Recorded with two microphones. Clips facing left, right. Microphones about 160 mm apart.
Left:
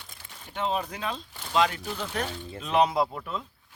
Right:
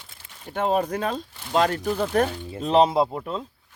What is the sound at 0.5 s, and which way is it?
Speech, 50° right (ahead or behind).